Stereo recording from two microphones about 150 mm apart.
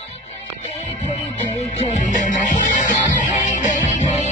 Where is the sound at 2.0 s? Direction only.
60° left (ahead or behind).